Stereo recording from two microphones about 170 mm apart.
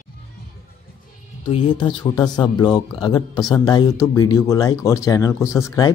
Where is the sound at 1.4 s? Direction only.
30° left (ahead or behind).